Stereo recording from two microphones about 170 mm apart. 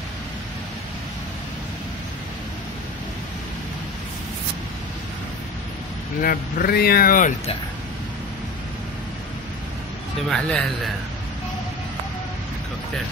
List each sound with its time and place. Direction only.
6.2 s speech: 60° left (ahead or behind)
10.3 s speech: 5° left (ahead or behind)